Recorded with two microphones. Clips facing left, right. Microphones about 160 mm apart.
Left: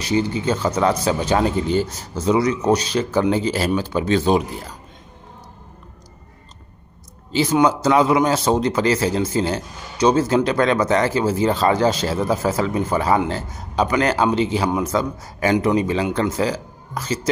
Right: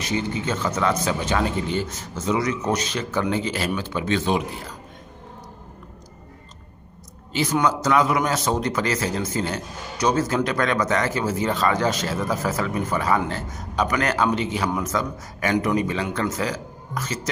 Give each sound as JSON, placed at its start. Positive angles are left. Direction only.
{"t": 0.0, "sound": "speech", "side_deg": 35}
{"t": 7.3, "sound": "a man's voice", "side_deg": 30}